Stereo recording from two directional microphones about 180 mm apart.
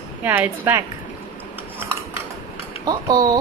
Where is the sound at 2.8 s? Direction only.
20° right (ahead or behind).